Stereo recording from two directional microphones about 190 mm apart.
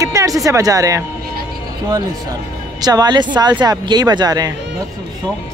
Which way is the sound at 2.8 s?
20° right (ahead or behind).